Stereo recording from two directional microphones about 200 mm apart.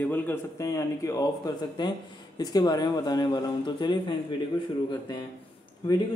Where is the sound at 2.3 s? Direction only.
20° left (ahead or behind).